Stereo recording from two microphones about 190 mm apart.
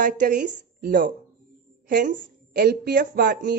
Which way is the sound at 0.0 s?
45° right (ahead or behind).